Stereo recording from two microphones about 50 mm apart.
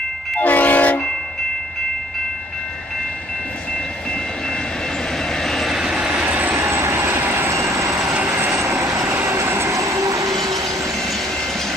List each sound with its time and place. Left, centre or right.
0.4 s train: left
5.4 s vehicle: centre
5.7 s vehicle: centre
6.2 s vehicle: right
6.5 s vehicle: right
7.2 s train: right
7.5 s vehicle: right
8.5 s vehicle: right
9.2 s train: right